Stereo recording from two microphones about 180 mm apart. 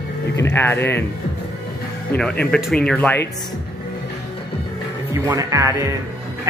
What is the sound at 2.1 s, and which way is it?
Speech, 5° left (ahead or behind).